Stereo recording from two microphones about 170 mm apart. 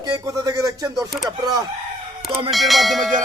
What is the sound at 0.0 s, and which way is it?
Music, 20° right (ahead or behind).